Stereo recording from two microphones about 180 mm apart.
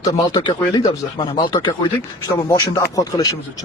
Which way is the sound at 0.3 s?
25° left (ahead or behind).